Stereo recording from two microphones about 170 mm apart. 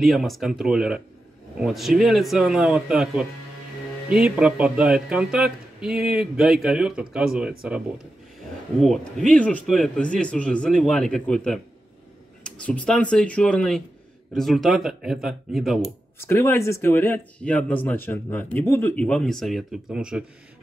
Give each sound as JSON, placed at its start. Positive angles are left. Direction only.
{"t": 0.0, "sound": "speech", "side_deg": 0}
{"t": 16.2, "sound": "speech", "side_deg": 15}